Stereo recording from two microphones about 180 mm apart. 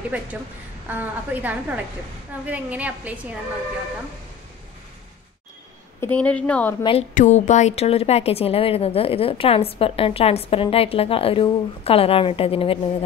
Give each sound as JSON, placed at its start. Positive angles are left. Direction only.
{"t": 0.8, "sound": "a woman's voice", "side_deg": -10}
{"t": 5.9, "sound": "a woman's voice", "side_deg": 10}
{"t": 6.8, "sound": "a woman's voice", "side_deg": 30}
{"t": 7.2, "sound": "a woman's voice", "side_deg": 40}